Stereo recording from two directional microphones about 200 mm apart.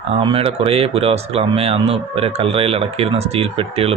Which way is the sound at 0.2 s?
25° right (ahead or behind).